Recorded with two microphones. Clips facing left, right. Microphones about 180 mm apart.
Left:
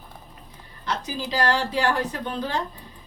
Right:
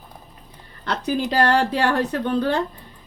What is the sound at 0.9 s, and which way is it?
Speech, 65° right (ahead or behind).